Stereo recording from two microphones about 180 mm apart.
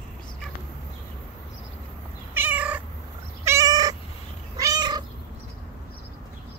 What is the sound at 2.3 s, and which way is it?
Cat, 10° right (ahead or behind).